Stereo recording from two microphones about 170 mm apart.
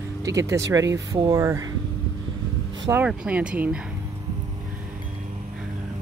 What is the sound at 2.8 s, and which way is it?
Speech, 10° right (ahead or behind).